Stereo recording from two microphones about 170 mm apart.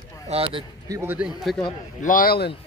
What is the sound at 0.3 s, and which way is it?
Speech, 30° right (ahead or behind).